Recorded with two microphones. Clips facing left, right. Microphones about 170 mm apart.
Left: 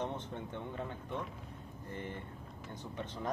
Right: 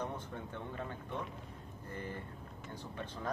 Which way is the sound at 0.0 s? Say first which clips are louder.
Left 2 dB; 25° left (ahead or behind).